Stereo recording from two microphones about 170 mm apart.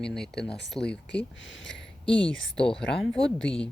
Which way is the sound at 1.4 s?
90° left.